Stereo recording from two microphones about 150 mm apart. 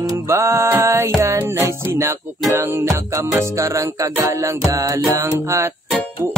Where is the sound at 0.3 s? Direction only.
20° right (ahead or behind).